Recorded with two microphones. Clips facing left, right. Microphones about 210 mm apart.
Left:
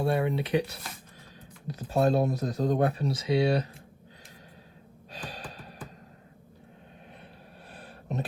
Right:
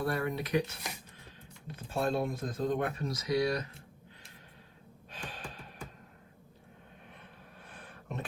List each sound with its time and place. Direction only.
0.0 s speech: 25° left (ahead or behind)
1.6 s speech: 40° left (ahead or behind)
5.1 s gasp: 35° left (ahead or behind)
7.7 s a sound: 35° left (ahead or behind)